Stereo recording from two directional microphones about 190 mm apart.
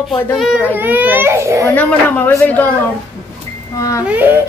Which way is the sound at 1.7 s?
10° left (ahead or behind).